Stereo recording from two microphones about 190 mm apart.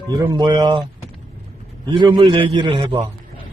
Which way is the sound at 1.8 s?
25° right (ahead or behind).